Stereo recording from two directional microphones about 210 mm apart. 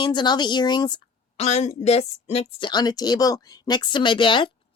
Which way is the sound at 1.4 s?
30° left (ahead or behind).